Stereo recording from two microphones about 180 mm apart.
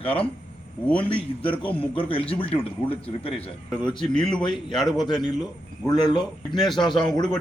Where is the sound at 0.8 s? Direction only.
5° left (ahead or behind).